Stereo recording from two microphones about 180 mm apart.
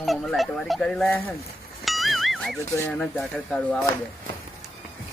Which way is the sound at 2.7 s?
10° left (ahead or behind).